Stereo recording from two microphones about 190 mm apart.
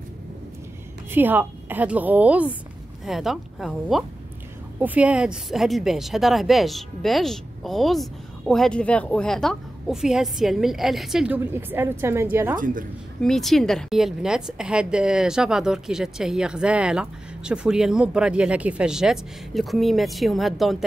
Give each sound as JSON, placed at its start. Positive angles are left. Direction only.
{"t": 1.1, "sound": "a woman's voice", "side_deg": -10}
{"t": 12.5, "sound": "a woman's voice", "side_deg": -45}
{"t": 13.2, "sound": "speech", "side_deg": 0}